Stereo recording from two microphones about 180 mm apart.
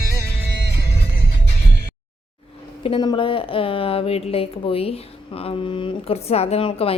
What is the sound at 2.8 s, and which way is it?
Speech, 25° left (ahead or behind).